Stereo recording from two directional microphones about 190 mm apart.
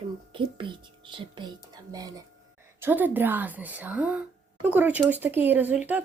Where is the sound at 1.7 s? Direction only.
20° right (ahead or behind).